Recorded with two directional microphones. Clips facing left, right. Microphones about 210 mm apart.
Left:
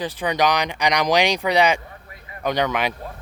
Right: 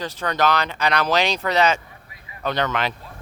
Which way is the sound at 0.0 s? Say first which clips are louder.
Left 1 dB; 15° left (ahead or behind).